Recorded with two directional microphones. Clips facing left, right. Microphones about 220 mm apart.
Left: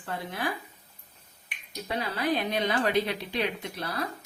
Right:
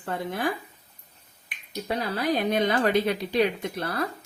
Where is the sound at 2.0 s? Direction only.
40° right (ahead or behind).